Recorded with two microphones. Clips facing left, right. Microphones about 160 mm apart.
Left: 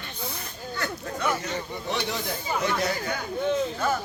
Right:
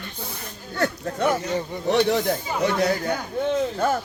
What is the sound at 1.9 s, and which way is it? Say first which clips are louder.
Speech: right 11 dB; 60° right (ahead or behind).